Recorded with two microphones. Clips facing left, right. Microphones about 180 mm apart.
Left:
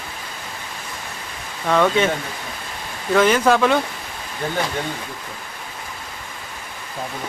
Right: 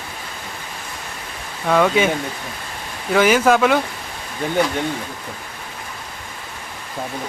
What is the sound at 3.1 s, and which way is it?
Speech, 5° right (ahead or behind).